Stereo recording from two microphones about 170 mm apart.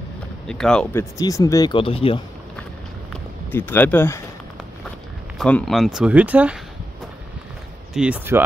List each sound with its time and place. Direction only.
0.5 s speech: 5° left (ahead or behind)
0.9 s speech: 20° left (ahead or behind)
3.5 s speech: 10° left (ahead or behind)
5.4 s speech: centre (ahead or behind)
7.9 s speech: 5° right (ahead or behind)